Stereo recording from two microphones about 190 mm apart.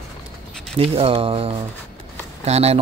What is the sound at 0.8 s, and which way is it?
Speech, 30° right (ahead or behind).